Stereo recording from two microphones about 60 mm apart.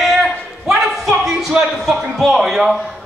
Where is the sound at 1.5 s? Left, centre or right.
Centre.